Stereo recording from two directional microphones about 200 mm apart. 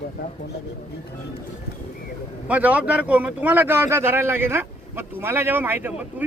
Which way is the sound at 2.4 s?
5° right (ahead or behind).